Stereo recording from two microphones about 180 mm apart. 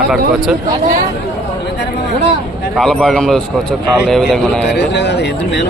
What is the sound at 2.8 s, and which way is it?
A man's voice, centre (ahead or behind).